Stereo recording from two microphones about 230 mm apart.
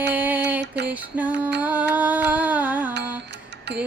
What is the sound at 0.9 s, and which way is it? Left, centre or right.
Music, centre.